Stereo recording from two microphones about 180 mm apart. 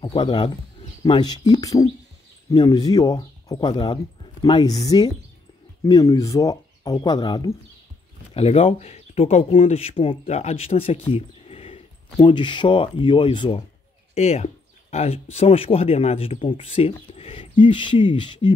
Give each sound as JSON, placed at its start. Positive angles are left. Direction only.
{"t": 0.0, "sound": "speech", "side_deg": 25}
{"t": 8.4, "sound": "speech", "side_deg": 35}